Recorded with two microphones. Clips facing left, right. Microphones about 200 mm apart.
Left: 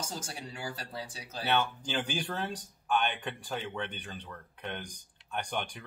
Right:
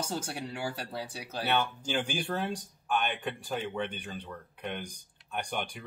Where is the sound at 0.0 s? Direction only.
65° right (ahead or behind).